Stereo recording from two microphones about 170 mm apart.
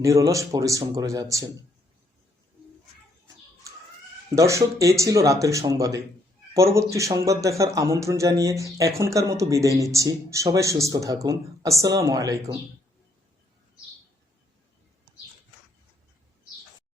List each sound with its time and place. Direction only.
0.0 s speech: 20° right (ahead or behind)
4.4 s speech: 20° right (ahead or behind)